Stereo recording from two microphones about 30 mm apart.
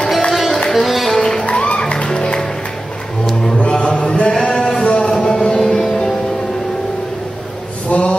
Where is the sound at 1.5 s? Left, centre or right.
Left.